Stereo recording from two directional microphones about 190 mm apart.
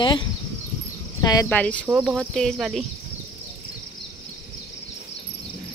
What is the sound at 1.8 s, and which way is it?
Speech, 10° right (ahead or behind).